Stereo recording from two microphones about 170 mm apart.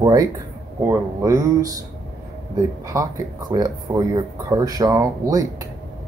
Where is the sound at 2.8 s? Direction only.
20° right (ahead or behind).